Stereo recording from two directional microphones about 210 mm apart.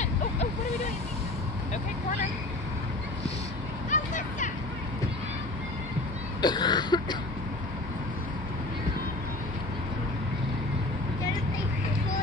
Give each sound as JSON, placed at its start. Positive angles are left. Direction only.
{"t": 0.0, "sound": "vehicle", "side_deg": 30}
{"t": 3.9, "sound": "vehicle", "side_deg": 35}
{"t": 6.4, "sound": "throat clearing", "side_deg": 20}